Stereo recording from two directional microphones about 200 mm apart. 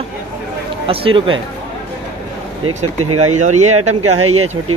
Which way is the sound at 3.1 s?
90° right.